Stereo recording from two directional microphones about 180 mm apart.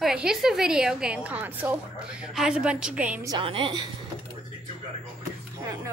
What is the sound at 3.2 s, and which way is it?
Speech, 25° right (ahead or behind).